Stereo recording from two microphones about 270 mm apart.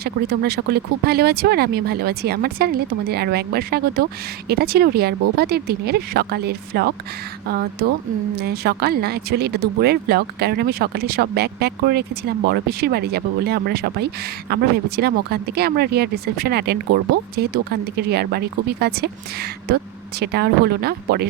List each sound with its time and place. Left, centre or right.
0.0 s speech: right
8.4 s speech: right